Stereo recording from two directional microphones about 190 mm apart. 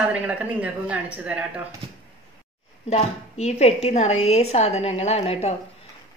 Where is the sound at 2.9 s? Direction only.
35° left (ahead or behind).